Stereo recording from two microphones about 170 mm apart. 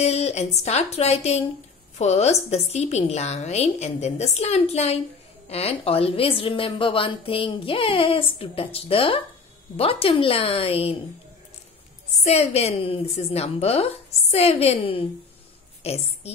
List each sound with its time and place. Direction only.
0.0 s a woman's voice: 40° left (ahead or behind)
12.2 s a woman's voice: 40° left (ahead or behind)